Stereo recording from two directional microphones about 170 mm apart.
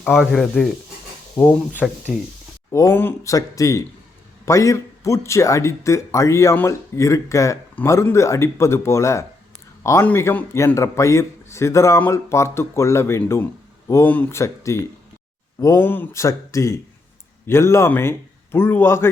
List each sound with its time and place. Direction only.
0.0 s speech: centre (ahead or behind)
1.7 s speech: 10° right (ahead or behind)
2.7 s speech: 15° left (ahead or behind)